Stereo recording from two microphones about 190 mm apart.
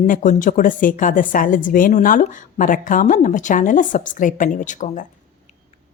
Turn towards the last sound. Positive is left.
turn(degrees=40)  # may be behind; listen again after turning